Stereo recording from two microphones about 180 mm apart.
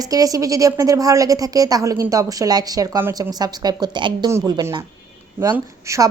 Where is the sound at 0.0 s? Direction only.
20° right (ahead or behind).